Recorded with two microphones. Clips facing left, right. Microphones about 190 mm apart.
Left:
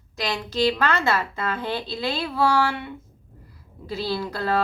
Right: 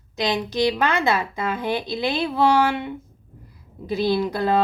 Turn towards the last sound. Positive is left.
turn(degrees=-15)  # may be behind; listen again after turning